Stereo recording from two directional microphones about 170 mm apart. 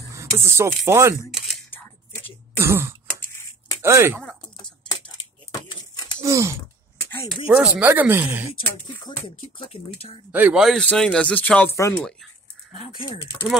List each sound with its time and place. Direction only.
0.1 s speech: 15° right (ahead or behind)
2.5 s throat clearing: 15° right (ahead or behind)
3.8 s speech: 15° right (ahead or behind)
4.2 s chicken: 5° left (ahead or behind)
5.7 s a sound: 25° left (ahead or behind)
6.2 s speech: 15° right (ahead or behind)
10.3 s speech: 5° right (ahead or behind)